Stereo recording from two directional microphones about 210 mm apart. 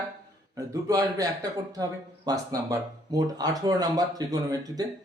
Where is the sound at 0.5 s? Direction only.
15° right (ahead or behind).